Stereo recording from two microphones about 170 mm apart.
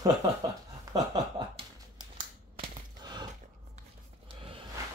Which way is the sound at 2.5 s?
30° right (ahead or behind).